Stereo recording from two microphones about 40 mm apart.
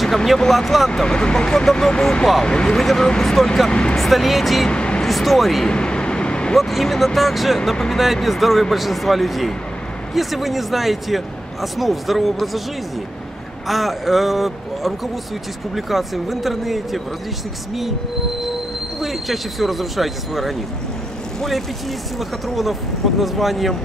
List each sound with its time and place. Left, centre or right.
0.0 s speech: centre
0.9 s speech: left
2.8 s speech: centre
4.6 s vehicle: left
5.0 s speech: centre
5.7 s vehicle: left
6.5 s speech: centre
13.7 s speech: centre
18.9 s speech: centre